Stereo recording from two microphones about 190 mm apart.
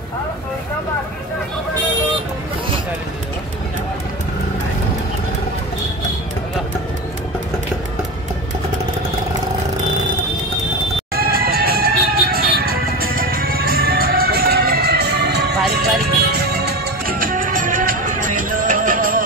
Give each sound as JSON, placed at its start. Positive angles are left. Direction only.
{"t": 11.1, "sound": "music", "side_deg": -50}